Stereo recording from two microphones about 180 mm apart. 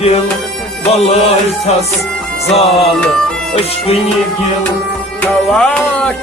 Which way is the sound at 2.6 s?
35° left (ahead or behind).